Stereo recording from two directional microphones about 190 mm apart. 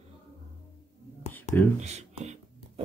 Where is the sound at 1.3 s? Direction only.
10° left (ahead or behind).